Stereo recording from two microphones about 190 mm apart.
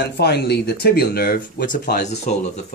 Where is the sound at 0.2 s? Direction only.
60° left (ahead or behind).